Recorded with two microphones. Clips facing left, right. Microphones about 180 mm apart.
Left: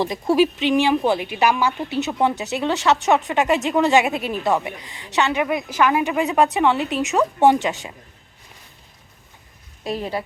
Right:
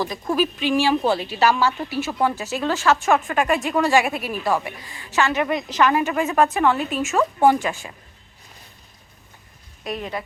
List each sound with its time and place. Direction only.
0.0 s speech: 25° left (ahead or behind)
9.8 s a woman's voice: 30° left (ahead or behind)